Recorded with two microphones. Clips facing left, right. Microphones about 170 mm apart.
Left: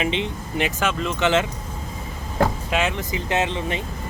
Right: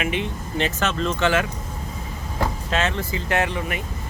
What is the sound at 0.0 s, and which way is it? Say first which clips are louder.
Speech: left 1 dB; 20° left (ahead or behind).